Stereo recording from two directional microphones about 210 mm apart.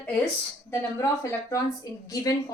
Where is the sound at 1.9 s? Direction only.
15° left (ahead or behind).